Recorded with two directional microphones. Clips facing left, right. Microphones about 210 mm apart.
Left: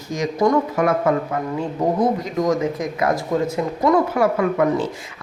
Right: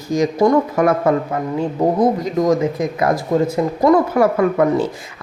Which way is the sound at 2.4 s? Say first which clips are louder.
Right 3 dB; 35° right (ahead or behind).